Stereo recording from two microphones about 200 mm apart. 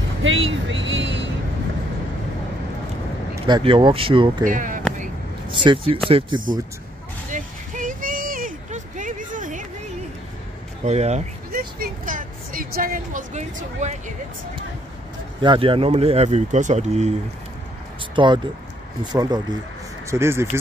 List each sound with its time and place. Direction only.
0.2 s speech: 75° right (ahead or behind)
3.4 s speech: 25° right (ahead or behind)
4.5 s speech: 40° right (ahead or behind)
5.5 s speech: 25° right (ahead or behind)
7.2 s a sound: 40° right (ahead or behind)
10.8 s speech: 35° right (ahead or behind)
11.5 s a sound: 45° right (ahead or behind)
15.4 s speech: 25° right (ahead or behind)
18.1 s speech: 25° right (ahead or behind)